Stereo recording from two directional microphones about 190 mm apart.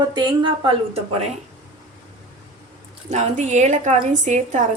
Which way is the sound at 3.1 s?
35° right (ahead or behind).